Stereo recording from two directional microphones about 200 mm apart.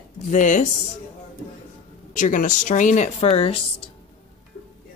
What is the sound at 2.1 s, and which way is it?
Speech, 40° left (ahead or behind).